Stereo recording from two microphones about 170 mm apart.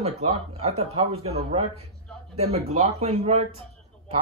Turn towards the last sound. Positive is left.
turn(degrees=-35)  # may be behind; listen again after turning